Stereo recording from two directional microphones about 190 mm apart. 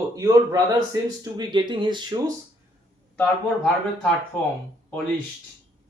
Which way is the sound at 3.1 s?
5° left (ahead or behind).